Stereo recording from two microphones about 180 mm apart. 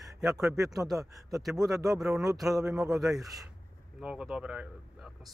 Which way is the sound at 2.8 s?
20° right (ahead or behind).